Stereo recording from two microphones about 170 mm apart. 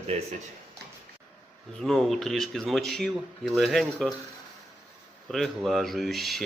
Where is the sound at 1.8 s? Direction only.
Centre (ahead or behind).